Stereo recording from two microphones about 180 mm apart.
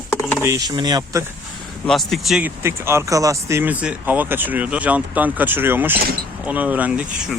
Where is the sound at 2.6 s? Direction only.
15° right (ahead or behind).